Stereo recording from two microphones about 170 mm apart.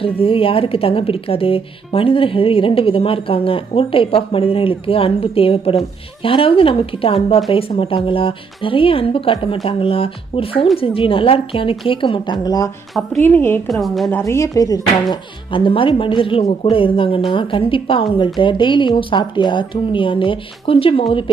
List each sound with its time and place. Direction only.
0.0 s a woman's voice: 35° left (ahead or behind); by 13.6 s 10° left (ahead or behind)
13.7 s a woman's voice: centre (ahead or behind)
14.1 s a woman's voice: 15° left (ahead or behind); by 21.2 s 30° left (ahead or behind)